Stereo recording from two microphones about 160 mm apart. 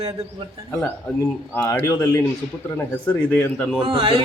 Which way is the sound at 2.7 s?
10° left (ahead or behind).